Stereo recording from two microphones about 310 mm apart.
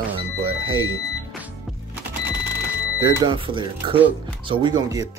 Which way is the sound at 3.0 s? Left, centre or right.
Centre.